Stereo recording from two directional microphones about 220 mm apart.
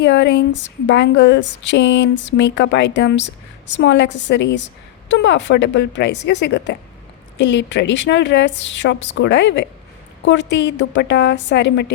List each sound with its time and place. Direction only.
0.0 s a woman's voice: 55° left (ahead or behind)